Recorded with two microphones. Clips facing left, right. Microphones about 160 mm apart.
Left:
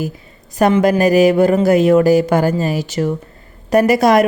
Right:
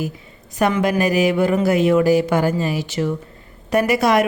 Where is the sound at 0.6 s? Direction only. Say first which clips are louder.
Left 5 dB; 40° left (ahead or behind).